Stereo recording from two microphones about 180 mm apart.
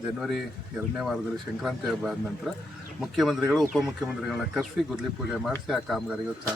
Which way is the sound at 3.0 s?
Centre (ahead or behind).